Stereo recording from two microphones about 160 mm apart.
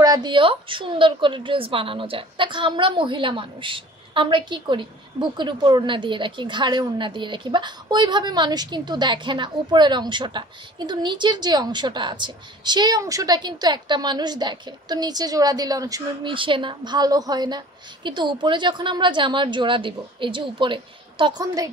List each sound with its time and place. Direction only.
0.0 s a woman's voice: 25° right (ahead or behind)